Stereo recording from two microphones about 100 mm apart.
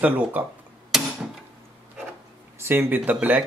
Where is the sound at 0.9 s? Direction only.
5° right (ahead or behind).